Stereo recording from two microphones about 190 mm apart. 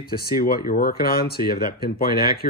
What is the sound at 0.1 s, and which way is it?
Speech, 50° left (ahead or behind).